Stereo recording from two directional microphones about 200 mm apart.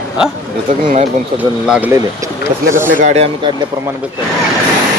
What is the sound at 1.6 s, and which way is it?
Speech, 5° right (ahead or behind).